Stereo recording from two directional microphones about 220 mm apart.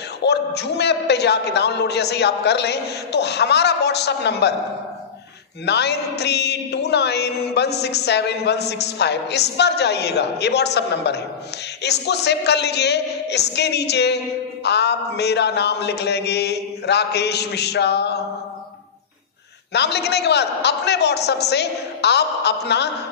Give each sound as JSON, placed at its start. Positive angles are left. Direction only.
{"t": 0.2, "sound": "speech", "side_deg": 50}
{"t": 5.7, "sound": "speech", "side_deg": 50}
{"t": 19.7, "sound": "speech", "side_deg": 50}